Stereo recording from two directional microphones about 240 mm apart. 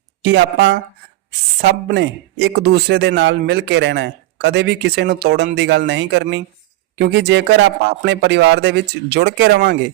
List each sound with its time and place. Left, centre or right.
0.3 s speech: right